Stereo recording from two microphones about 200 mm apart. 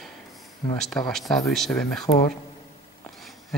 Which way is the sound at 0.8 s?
5° left (ahead or behind).